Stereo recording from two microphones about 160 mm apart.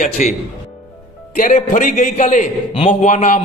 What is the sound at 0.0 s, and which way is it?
Speech, 50° left (ahead or behind).